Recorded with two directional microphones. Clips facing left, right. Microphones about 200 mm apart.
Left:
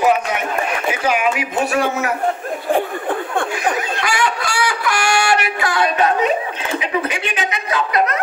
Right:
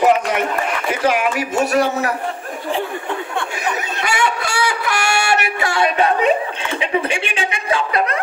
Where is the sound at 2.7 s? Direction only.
50° left (ahead or behind).